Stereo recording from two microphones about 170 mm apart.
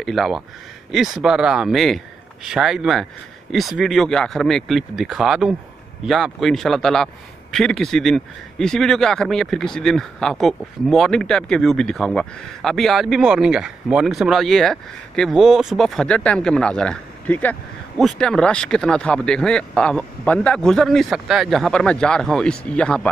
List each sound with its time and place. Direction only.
0.0 s speech: centre (ahead or behind)